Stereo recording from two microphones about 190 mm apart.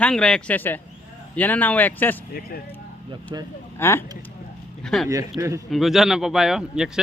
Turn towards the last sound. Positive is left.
turn(degrees=-5)  # may be behind; listen again after turning